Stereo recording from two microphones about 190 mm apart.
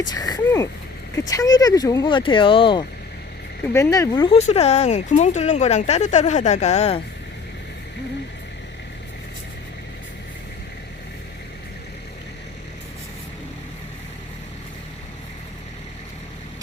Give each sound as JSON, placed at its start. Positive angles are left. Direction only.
{"t": 0.0, "sound": "speech", "side_deg": 20}
{"t": 3.7, "sound": "speech", "side_deg": 15}